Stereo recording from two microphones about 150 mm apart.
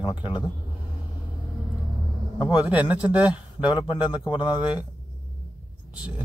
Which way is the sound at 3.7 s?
30° left (ahead or behind).